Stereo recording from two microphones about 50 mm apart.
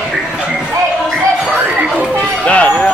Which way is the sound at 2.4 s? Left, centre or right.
Left.